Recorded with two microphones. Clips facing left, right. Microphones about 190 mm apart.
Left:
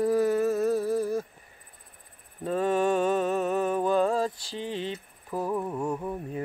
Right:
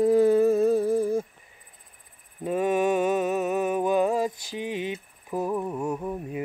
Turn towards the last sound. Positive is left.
turn(degrees=-5)  # may be behind; listen again after turning